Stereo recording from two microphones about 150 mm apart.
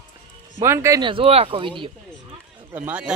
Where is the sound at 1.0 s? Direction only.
35° right (ahead or behind).